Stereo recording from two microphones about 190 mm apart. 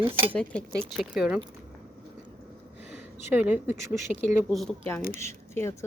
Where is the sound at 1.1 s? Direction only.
5° right (ahead or behind).